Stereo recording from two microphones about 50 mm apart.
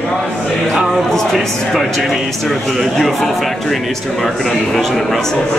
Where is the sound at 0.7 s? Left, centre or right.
Centre.